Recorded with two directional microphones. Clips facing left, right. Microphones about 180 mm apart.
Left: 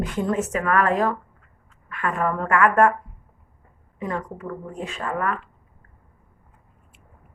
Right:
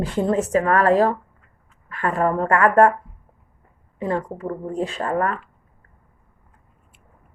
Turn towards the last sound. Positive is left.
turn(degrees=-35)  # may be behind; listen again after turning